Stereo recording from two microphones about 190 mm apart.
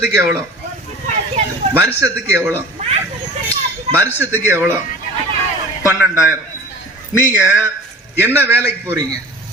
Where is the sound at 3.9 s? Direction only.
35° right (ahead or behind).